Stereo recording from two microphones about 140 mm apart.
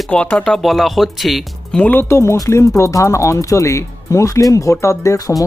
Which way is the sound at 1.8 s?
10° left (ahead or behind).